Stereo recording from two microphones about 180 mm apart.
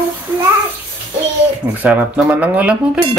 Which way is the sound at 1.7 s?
5° right (ahead or behind).